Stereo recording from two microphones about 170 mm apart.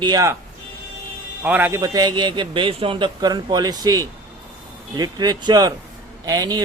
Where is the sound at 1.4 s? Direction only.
10° right (ahead or behind).